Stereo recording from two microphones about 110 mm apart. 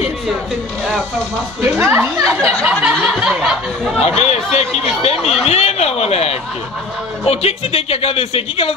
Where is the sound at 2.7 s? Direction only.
5° right (ahead or behind).